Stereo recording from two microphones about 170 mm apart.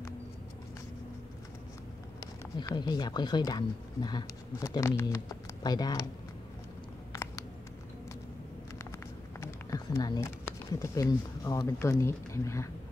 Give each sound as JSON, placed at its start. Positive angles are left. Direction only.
{"t": 2.1, "sound": "speech", "side_deg": 25}
{"t": 7.1, "sound": "a sound", "side_deg": 20}
{"t": 9.4, "sound": "speech", "side_deg": 15}